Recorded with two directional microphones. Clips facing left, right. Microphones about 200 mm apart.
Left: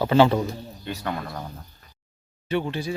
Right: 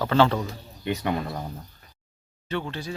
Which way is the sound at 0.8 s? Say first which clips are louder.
Right 4 dB; 15° right (ahead or behind).